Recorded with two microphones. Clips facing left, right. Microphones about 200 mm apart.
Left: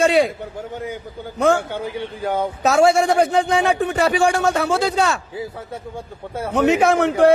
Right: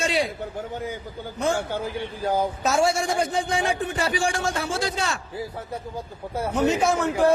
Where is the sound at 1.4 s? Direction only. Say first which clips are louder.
Left 7 dB; 60° left (ahead or behind).